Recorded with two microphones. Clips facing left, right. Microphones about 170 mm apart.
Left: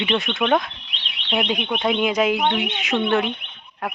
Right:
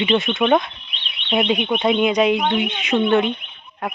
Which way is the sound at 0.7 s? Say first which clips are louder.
Even; 90° left.